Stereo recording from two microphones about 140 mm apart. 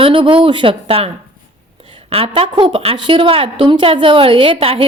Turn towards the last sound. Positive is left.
turn(degrees=-40)  # may be behind; listen again after turning